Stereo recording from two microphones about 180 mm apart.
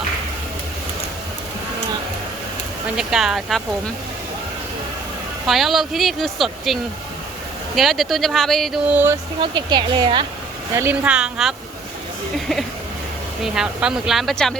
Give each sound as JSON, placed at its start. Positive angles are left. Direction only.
{"t": 2.9, "sound": "speech", "side_deg": -5}
{"t": 5.5, "sound": "speech", "side_deg": 0}
{"t": 7.8, "sound": "speech", "side_deg": 0}
{"t": 9.4, "sound": "a woman's voice", "side_deg": -25}
{"t": 10.8, "sound": "speech", "side_deg": -10}
{"t": 13.4, "sound": "speech", "side_deg": -5}